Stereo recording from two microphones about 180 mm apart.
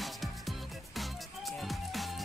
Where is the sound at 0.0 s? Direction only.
Centre (ahead or behind).